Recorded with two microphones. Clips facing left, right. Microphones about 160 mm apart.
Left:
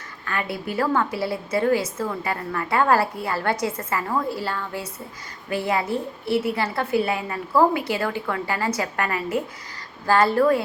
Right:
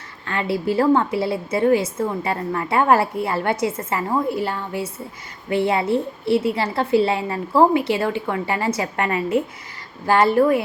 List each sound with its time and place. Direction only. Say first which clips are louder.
0.3 s a woman's voice: right 6 dB; 25° right (ahead or behind)